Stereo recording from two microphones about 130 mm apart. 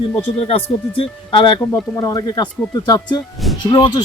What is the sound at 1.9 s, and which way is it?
Speech, 25° left (ahead or behind).